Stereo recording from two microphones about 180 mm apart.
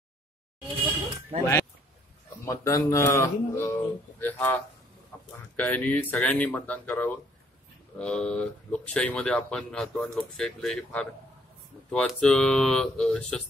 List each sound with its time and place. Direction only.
1.4 s speech: 15° left (ahead or behind)
5.1 s a sound: 10° left (ahead or behind)
5.6 s speech: 10° left (ahead or behind)